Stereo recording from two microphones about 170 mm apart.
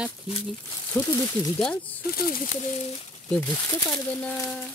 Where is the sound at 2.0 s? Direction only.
65° left (ahead or behind).